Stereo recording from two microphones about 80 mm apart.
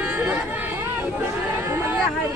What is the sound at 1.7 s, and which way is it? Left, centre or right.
Speech, right.